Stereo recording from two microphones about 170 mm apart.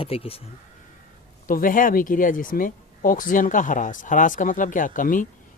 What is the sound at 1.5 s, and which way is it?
Speech, 55° left (ahead or behind).